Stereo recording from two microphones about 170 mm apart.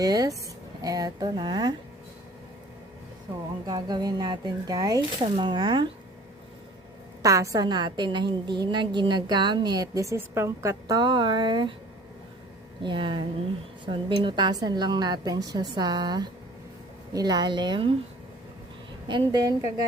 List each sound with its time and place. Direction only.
0.0 s a woman's voice: 20° right (ahead or behind)
3.7 s a woman's voice: 25° right (ahead or behind)
7.2 s a woman's voice: 20° right (ahead or behind)
12.8 s a woman's voice: 30° right (ahead or behind)
19.0 s a woman's voice: 25° right (ahead or behind)